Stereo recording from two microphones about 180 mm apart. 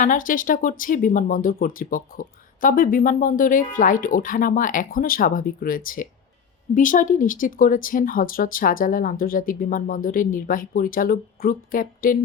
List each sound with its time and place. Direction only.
0.0 s speech: 50° left (ahead or behind)